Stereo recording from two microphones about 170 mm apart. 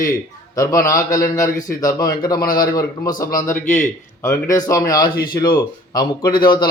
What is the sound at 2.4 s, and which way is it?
Speech, 60° left (ahead or behind).